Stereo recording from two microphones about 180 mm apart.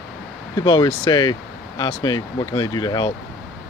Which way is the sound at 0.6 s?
25° left (ahead or behind).